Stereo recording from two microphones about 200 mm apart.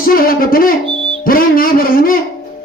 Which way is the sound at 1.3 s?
45° left (ahead or behind).